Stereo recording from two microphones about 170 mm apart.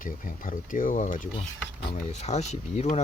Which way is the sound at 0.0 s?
50° left (ahead or behind).